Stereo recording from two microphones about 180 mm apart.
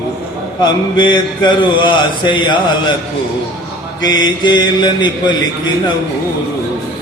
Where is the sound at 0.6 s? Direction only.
25° left (ahead or behind).